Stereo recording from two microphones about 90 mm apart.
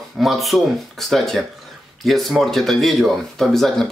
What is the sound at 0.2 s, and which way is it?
Speech, centre (ahead or behind).